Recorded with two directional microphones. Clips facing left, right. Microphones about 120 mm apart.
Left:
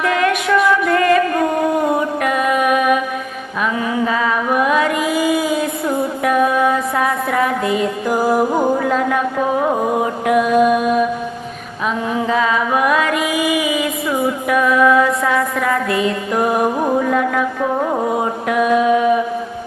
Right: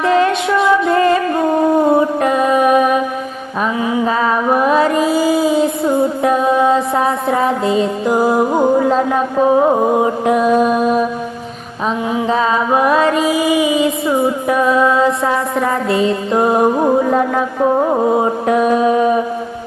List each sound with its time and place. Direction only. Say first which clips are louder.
0.0 s music: right 3 dB; 30° right (ahead or behind)
4.0 s music: right 3 dB; 35° right (ahead or behind)
12.3 s music: right 2 dB; 30° right (ahead or behind)